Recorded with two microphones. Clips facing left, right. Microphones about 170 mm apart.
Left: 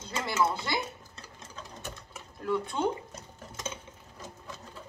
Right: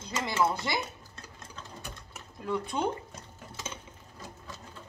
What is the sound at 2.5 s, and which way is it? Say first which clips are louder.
Dishes: left 1 dB; 15° right (ahead or behind).